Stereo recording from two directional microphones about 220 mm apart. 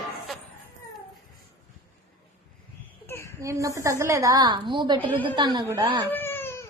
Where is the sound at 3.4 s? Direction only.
15° right (ahead or behind).